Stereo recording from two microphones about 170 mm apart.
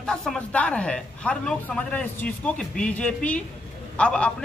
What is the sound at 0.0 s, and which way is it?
A man's voice, 5° left (ahead or behind).